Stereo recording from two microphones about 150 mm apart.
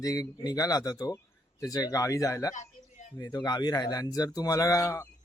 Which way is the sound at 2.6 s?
55° left (ahead or behind).